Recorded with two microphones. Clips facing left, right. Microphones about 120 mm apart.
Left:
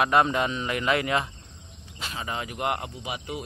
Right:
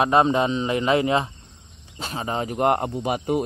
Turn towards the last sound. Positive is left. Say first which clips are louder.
# right 11 dB
turn(degrees=-50)  # may be behind; listen again after turning